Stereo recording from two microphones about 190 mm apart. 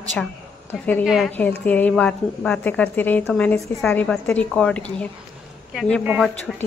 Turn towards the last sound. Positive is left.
turn(degrees=-5)  # may be behind; listen again after turning